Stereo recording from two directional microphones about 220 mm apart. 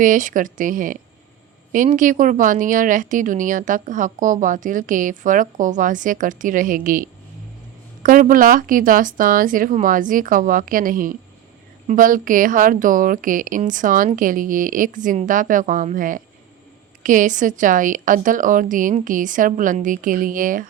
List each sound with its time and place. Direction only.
0.0 s a woman's voice: 35° right (ahead or behind)